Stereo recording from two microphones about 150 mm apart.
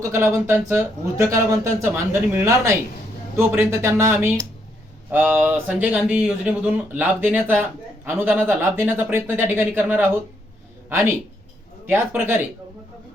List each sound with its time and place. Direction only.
0.0 s speech: 15° right (ahead or behind)